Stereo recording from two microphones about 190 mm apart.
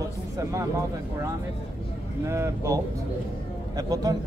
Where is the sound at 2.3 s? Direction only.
15° right (ahead or behind).